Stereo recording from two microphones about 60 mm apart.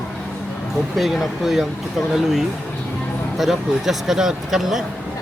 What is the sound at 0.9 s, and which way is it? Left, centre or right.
Speech, centre.